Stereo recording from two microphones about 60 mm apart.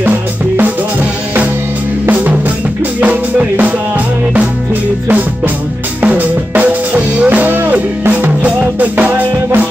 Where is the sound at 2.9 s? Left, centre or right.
Right.